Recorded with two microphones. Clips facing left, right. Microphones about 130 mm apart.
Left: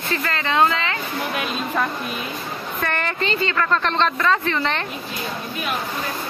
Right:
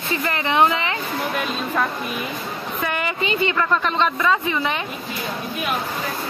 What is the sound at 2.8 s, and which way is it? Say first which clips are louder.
A woman's voice: even; 10° right (ahead or behind).